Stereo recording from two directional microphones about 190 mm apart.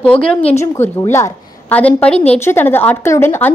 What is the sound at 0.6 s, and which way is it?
A woman's voice, 15° left (ahead or behind).